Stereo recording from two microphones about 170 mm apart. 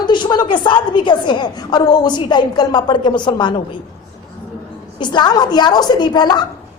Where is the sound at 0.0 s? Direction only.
25° left (ahead or behind).